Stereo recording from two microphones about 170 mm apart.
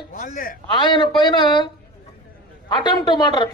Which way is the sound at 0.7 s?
30° left (ahead or behind).